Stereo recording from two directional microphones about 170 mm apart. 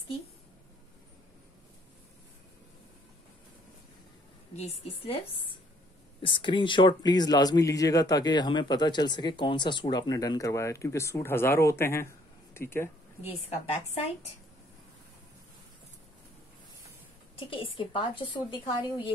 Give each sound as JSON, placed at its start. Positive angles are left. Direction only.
{"t": 4.6, "sound": "a woman's voice", "side_deg": 35}
{"t": 13.2, "sound": "a woman's voice", "side_deg": 35}
{"t": 17.4, "sound": "speech", "side_deg": 30}